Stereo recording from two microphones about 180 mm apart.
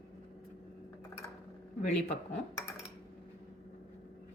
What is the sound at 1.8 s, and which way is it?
Speech, 40° left (ahead or behind).